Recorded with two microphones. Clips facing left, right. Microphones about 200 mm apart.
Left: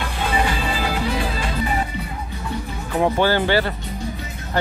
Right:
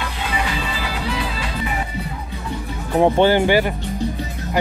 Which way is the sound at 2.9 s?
25° right (ahead or behind).